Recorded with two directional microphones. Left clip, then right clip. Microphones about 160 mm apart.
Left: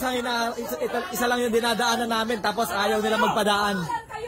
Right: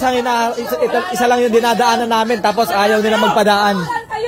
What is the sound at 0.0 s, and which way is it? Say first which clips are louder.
A man's voice: right 11 dB; 15° left (ahead or behind).